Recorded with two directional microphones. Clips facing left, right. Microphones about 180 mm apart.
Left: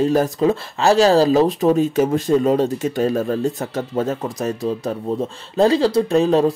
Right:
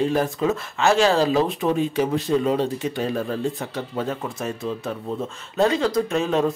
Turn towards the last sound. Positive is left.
turn(degrees=35)  # may be behind; listen again after turning